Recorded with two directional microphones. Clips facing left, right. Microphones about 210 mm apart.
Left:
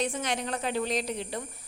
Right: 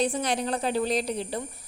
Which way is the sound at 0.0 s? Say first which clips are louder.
Right 4 dB; 35° right (ahead or behind).